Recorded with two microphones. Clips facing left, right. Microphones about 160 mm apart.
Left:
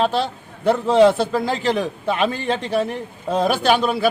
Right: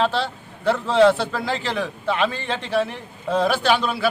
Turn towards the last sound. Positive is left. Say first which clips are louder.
# left 3 dB
turn(degrees=45)  # may be behind; listen again after turning